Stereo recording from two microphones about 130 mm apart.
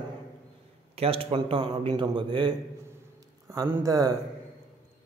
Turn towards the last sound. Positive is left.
turn(degrees=-30)  # may be behind; listen again after turning